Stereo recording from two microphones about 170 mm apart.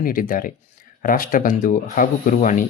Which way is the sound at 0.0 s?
55° left (ahead or behind).